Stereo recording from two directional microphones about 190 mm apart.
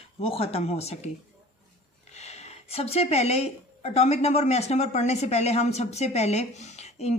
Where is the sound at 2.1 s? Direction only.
35° left (ahead or behind).